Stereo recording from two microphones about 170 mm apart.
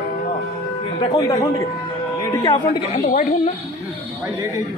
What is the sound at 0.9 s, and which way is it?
A man's voice, 25° left (ahead or behind).